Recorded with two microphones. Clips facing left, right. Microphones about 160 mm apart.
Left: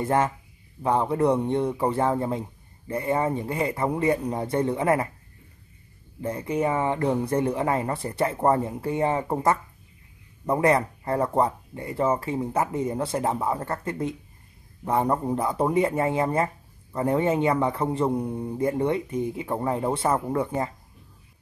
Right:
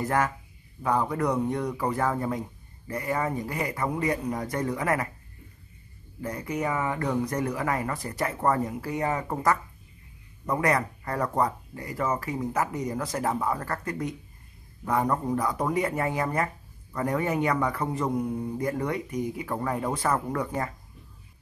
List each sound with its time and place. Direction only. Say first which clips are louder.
0.0 s a man's voice: left 3 dB; 25° left (ahead or behind)
6.2 s a man's voice: left 4 dB; 25° left (ahead or behind)